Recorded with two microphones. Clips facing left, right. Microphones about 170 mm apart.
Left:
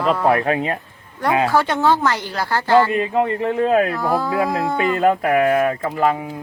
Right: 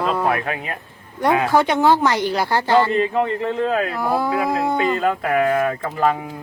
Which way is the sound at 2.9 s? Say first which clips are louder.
Even; 15° left (ahead or behind).